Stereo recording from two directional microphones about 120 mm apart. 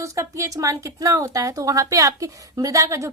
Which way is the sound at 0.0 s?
25° right (ahead or behind).